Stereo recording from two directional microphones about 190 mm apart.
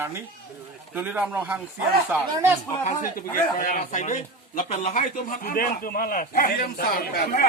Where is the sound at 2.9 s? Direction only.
45° left (ahead or behind).